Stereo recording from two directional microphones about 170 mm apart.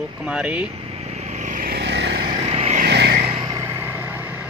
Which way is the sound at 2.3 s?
35° right (ahead or behind).